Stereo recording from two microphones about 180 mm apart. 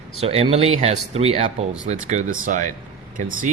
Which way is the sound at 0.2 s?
35° right (ahead or behind).